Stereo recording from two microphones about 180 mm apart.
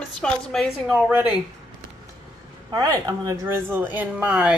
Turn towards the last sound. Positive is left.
turn(degrees=-5)  # may be behind; listen again after turning